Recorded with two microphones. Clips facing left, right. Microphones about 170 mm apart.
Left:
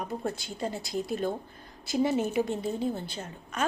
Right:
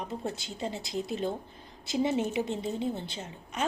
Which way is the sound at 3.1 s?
20° right (ahead or behind).